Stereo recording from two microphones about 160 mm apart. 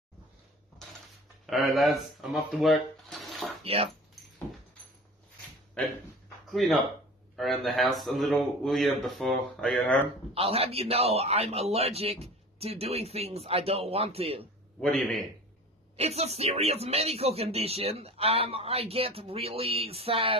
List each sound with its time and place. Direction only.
1.4 s speech: centre (ahead or behind)
3.6 s speech: 40° right (ahead or behind)
6.5 s speech: centre (ahead or behind)
10.3 s speech: 40° right (ahead or behind)
14.8 s speech: 5° left (ahead or behind)
16.0 s speech: 40° right (ahead or behind)